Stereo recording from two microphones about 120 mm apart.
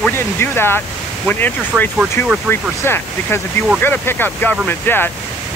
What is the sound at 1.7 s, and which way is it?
Speech, 10° right (ahead or behind).